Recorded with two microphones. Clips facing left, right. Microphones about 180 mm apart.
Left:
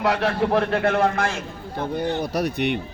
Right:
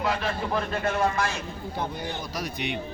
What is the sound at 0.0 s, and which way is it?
A man's voice, 70° left (ahead or behind).